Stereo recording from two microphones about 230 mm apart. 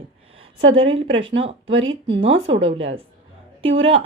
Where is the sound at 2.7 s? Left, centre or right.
Right.